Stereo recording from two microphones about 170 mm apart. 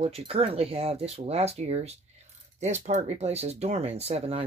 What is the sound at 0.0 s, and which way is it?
Speech, 35° right (ahead or behind).